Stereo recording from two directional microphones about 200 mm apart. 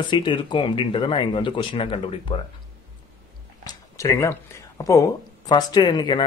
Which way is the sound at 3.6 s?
15° left (ahead or behind).